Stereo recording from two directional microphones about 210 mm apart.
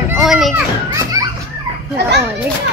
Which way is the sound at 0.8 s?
15° right (ahead or behind).